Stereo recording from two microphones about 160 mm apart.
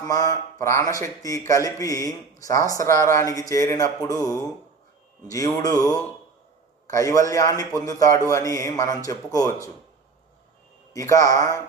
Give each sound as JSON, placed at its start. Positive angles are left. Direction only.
{"t": 0.0, "sound": "speech", "side_deg": 20}
{"t": 10.9, "sound": "speech", "side_deg": 20}